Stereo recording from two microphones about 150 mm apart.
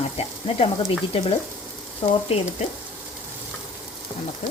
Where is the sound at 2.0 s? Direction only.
40° left (ahead or behind).